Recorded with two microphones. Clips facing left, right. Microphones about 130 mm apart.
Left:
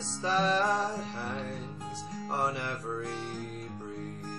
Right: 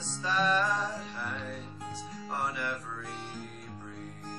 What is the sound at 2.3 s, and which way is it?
Music, 30° left (ahead or behind).